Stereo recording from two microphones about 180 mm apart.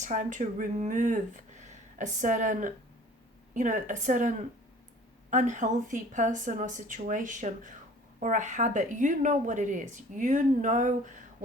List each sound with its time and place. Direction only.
0.0 s a woman's voice: 45° right (ahead or behind)